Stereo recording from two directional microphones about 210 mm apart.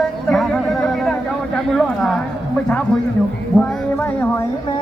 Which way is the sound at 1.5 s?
Centre (ahead or behind).